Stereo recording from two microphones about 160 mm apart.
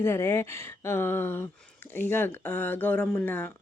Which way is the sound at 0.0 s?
15° left (ahead or behind).